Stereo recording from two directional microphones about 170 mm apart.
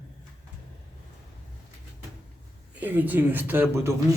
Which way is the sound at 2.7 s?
10° right (ahead or behind).